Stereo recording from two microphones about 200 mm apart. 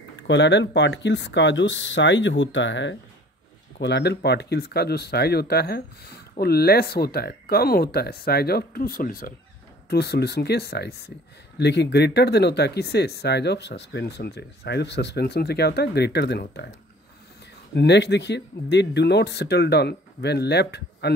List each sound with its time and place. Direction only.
0.1 s speech: 60° left (ahead or behind)
17.7 s speech: 60° left (ahead or behind)